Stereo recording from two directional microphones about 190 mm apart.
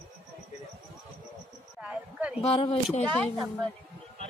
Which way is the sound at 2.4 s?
30° left (ahead or behind).